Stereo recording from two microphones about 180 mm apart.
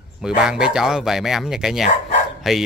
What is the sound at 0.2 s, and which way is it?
Speech, 5° right (ahead or behind).